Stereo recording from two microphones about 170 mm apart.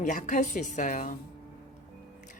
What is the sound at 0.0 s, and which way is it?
Speech, 50° left (ahead or behind).